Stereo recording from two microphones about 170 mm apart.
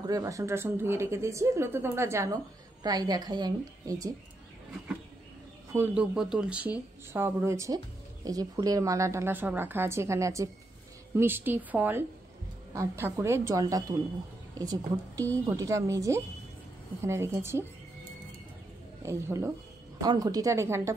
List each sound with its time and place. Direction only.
0.0 s a woman's voice: 20° right (ahead or behind)
5.7 s a woman's voice: 10° right (ahead or behind)
19.0 s a woman's voice: 15° right (ahead or behind)